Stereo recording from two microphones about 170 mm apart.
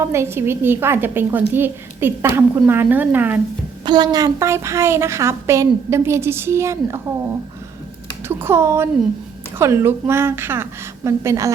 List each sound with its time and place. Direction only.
0.0 s a woman's voice: 15° right (ahead or behind)
3.8 s a woman's voice: 25° right (ahead or behind)
8.3 s a woman's voice: 15° right (ahead or behind)